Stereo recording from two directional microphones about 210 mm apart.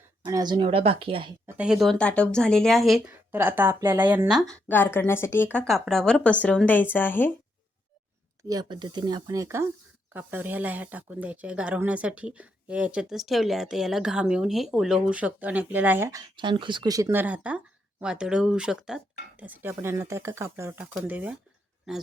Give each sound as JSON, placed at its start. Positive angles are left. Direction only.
{"t": 0.2, "sound": "speech", "side_deg": -20}
{"t": 1.5, "sound": "speech", "side_deg": -5}
{"t": 8.4, "sound": "speech", "side_deg": -20}
{"t": 16.3, "sound": "speech", "side_deg": -20}